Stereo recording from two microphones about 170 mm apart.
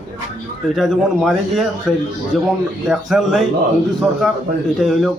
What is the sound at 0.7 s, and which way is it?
A man's voice, centre (ahead or behind).